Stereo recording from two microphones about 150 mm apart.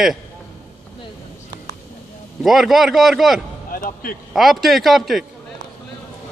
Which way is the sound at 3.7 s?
70° left (ahead or behind).